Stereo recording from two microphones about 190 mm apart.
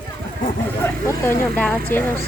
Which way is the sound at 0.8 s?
10° left (ahead or behind).